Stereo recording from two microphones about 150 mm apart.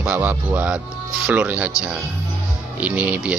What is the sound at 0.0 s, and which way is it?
Speech, 10° right (ahead or behind).